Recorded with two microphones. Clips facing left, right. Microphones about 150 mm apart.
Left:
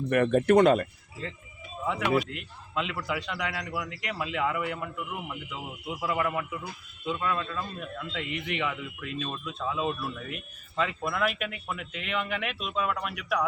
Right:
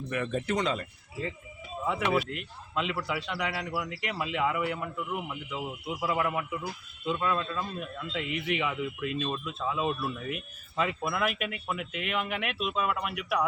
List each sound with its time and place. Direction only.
0.1 s speech: 60° left (ahead or behind)
1.9 s speech: centre (ahead or behind)